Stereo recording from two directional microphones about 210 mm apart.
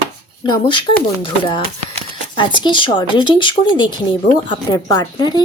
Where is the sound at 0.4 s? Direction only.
25° left (ahead or behind).